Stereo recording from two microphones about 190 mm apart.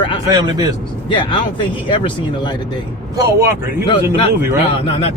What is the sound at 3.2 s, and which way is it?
Speech, 15° right (ahead or behind).